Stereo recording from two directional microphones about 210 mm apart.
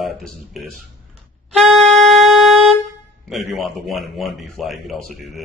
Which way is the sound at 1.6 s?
Centre (ahead or behind).